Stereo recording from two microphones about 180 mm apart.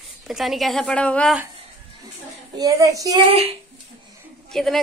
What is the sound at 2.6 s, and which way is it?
Speech, 20° right (ahead or behind).